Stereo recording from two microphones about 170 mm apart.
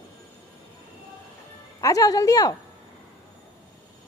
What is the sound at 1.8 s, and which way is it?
Speech, 20° left (ahead or behind).